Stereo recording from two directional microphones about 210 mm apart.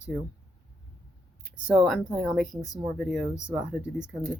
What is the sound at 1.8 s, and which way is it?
Speech, centre (ahead or behind).